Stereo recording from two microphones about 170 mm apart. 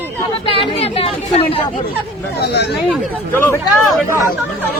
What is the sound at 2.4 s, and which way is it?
Speech, 75° left (ahead or behind).